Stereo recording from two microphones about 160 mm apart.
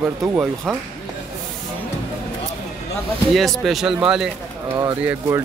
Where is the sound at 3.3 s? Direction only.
Centre (ahead or behind).